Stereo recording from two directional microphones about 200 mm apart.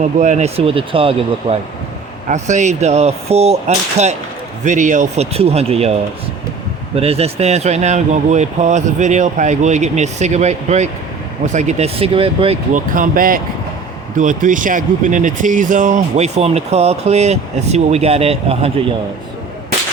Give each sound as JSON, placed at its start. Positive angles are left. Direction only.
{"t": 0.0, "sound": "speech", "side_deg": -35}
{"t": 12.7, "sound": "speech", "side_deg": -40}